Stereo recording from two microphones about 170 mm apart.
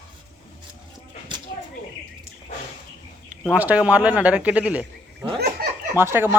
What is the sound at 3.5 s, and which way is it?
Speech, 10° right (ahead or behind).